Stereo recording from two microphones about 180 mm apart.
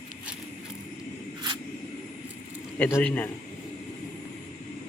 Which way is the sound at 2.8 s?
10° left (ahead or behind).